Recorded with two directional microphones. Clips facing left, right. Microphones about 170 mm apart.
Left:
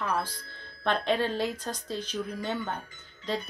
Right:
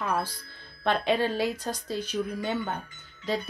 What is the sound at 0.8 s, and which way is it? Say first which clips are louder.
Speech: right 2 dB; 10° right (ahead or behind).